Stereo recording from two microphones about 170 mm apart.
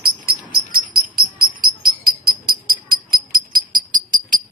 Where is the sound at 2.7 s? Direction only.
60° right (ahead or behind).